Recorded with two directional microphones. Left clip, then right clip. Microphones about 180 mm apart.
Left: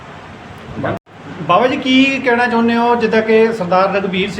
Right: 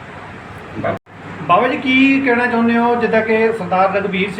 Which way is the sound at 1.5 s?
60° left (ahead or behind).